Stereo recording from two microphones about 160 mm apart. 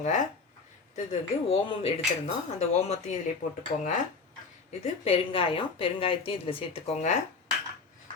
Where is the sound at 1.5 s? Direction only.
40° left (ahead or behind).